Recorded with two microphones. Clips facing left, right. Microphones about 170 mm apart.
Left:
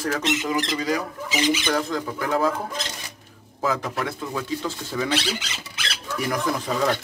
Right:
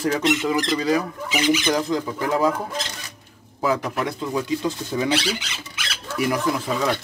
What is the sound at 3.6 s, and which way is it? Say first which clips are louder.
Speech: right 3 dB; 15° right (ahead or behind).